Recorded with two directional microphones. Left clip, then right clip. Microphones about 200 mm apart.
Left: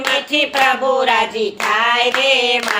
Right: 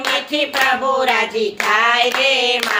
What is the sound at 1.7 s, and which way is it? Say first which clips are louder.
Female singing: even; 10° left (ahead or behind).